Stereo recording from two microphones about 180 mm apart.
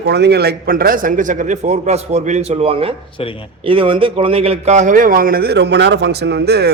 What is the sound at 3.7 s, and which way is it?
Speech, 30° right (ahead or behind).